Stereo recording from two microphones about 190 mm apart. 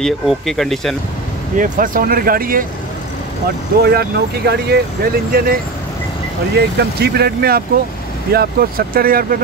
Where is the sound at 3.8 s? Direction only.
55° right (ahead or behind).